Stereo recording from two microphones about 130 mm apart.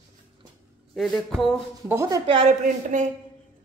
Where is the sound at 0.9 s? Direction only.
5° left (ahead or behind).